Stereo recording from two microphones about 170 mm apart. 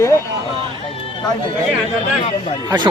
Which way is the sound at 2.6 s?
25° right (ahead or behind).